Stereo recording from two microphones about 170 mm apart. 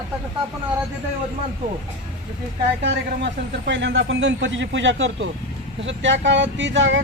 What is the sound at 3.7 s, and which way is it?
Speech, 90° right.